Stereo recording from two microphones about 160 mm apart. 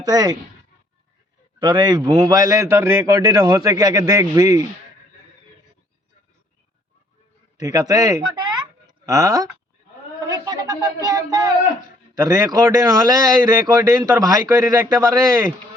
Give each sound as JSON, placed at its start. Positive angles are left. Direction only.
{"t": 0.0, "sound": "a man's voice", "side_deg": -25}
{"t": 1.5, "sound": "a man's voice", "side_deg": -30}
{"t": 7.6, "sound": "speech", "side_deg": -20}
{"t": 10.2, "sound": "a sound", "side_deg": -25}
{"t": 12.2, "sound": "a man's voice", "side_deg": -20}